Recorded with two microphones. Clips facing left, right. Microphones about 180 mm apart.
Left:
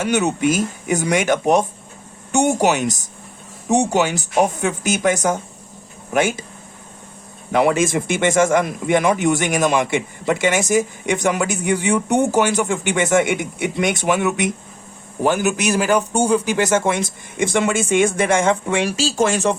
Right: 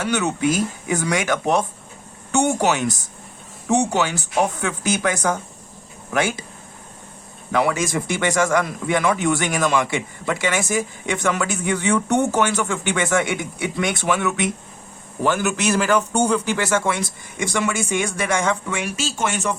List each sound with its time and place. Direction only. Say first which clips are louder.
0.0 s speech: left 3 dB; 20° left (ahead or behind)
3.9 s speech: left 3 dB; 15° left (ahead or behind)
7.5 s speech: left 4 dB; 25° left (ahead or behind)
16.1 s speech: left 3 dB; 30° left (ahead or behind)
16.4 s speech: left 3 dB; 15° left (ahead or behind); by 19.5 s 35° left (ahead or behind)